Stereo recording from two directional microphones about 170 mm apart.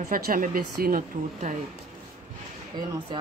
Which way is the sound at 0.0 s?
55° right (ahead or behind).